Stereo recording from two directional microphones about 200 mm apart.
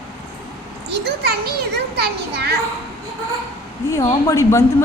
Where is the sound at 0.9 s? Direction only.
55° right (ahead or behind).